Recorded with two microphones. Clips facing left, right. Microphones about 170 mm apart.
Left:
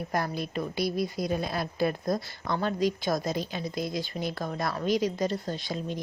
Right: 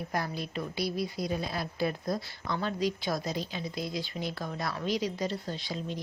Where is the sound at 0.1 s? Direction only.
50° left (ahead or behind).